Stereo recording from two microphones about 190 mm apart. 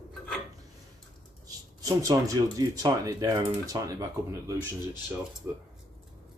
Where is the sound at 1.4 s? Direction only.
20° right (ahead or behind).